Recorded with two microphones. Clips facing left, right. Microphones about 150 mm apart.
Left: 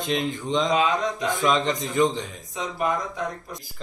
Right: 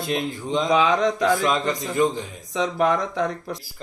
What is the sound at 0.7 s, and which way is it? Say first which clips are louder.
Speech: right 4 dB; 85° right.